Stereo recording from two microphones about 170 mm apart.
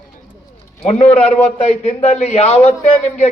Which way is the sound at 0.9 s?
40° left (ahead or behind).